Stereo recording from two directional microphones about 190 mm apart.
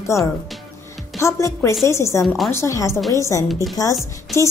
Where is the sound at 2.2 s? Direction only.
Centre (ahead or behind).